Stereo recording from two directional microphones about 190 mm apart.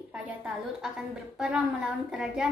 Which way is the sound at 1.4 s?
5° right (ahead or behind).